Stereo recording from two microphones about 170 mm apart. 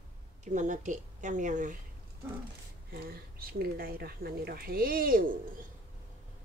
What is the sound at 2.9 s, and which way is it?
Speech, 65° right (ahead or behind).